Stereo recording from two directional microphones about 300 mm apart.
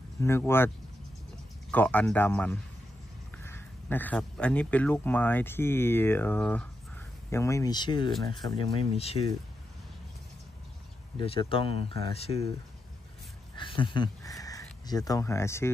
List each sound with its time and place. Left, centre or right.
0.2 s speech: centre
1.7 s speech: centre
11.1 s speech: centre
13.6 s speech: centre